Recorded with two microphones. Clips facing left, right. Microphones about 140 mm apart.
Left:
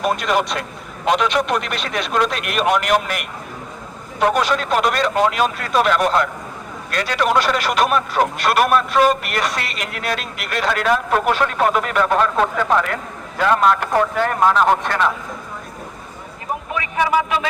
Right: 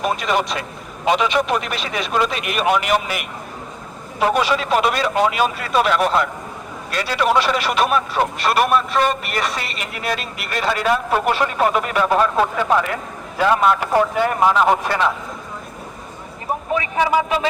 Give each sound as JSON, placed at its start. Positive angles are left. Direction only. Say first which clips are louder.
{"t": 0.0, "sound": "a man's voice", "louder": "left 1 dB", "side_deg": 0}
{"t": 16.7, "sound": "speech", "louder": "right 1 dB", "side_deg": -30}